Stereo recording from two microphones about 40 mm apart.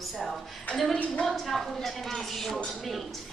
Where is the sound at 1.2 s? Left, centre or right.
Centre.